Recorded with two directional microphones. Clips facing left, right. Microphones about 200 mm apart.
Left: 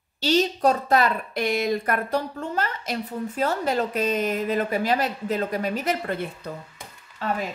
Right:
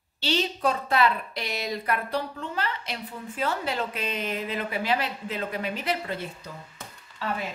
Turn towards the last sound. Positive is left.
turn(degrees=45)  # may be behind; listen again after turning